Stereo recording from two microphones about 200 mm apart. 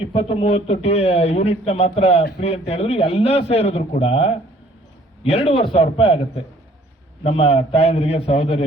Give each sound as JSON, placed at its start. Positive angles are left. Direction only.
{"t": 0.0, "sound": "a man's voice", "side_deg": 30}